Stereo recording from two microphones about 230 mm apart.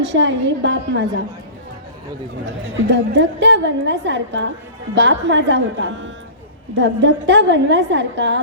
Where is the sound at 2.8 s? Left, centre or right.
Right.